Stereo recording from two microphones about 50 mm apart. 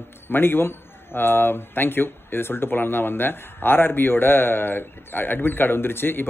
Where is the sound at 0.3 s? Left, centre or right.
Left.